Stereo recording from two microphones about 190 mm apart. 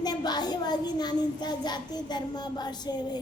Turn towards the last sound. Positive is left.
turn(degrees=20)  # may be behind; listen again after turning